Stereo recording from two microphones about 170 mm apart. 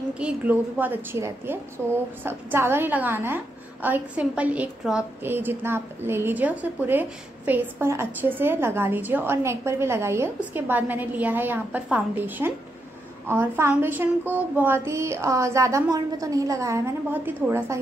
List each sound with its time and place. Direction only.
0.2 s a woman's voice: 5° right (ahead or behind)